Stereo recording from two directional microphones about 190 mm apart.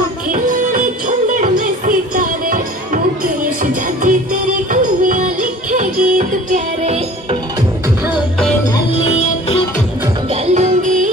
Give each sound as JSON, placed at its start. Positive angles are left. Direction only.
{"t": 0.3, "sound": "music", "side_deg": -45}
{"t": 9.1, "sound": "music", "side_deg": 30}
{"t": 10.3, "sound": "music", "side_deg": -35}